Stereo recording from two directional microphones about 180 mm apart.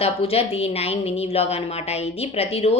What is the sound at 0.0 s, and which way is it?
A woman's voice, 35° left (ahead or behind).